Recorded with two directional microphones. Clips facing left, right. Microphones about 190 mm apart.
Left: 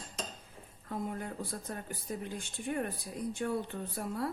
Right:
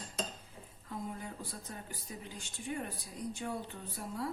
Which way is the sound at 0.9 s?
55° left (ahead or behind).